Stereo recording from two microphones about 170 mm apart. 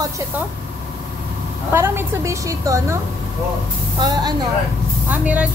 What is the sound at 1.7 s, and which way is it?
A woman's voice, 15° right (ahead or behind).